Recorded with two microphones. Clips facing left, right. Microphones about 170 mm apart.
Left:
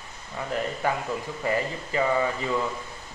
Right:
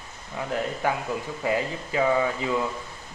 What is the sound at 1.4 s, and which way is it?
Speech, 10° right (ahead or behind).